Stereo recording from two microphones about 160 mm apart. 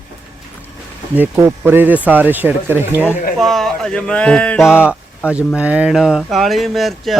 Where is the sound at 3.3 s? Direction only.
Centre (ahead or behind).